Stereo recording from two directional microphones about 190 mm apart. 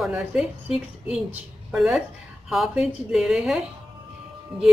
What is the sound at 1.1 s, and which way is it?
A woman's voice, 5° right (ahead or behind).